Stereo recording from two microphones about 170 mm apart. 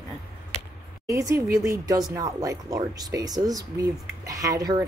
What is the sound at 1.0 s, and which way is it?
Speech, 20° right (ahead or behind).